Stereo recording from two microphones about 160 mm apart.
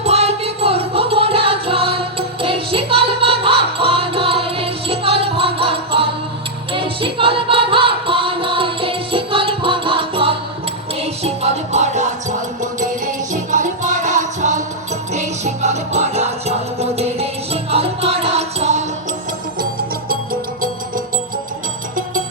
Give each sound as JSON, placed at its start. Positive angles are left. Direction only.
{"t": 0.0, "sound": "music", "side_deg": -40}